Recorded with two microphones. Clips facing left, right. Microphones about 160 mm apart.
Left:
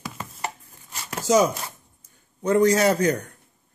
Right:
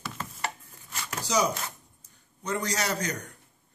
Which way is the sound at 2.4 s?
55° left (ahead or behind).